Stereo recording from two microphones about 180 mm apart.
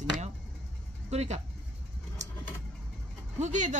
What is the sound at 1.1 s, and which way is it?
Speech, 35° right (ahead or behind).